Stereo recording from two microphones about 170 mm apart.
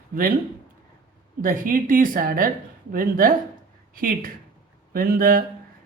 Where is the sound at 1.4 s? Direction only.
55° right (ahead or behind).